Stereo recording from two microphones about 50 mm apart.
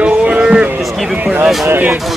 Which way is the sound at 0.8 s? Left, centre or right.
Centre.